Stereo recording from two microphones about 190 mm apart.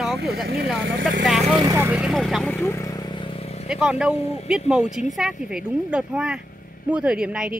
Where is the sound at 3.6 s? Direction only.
5° right (ahead or behind).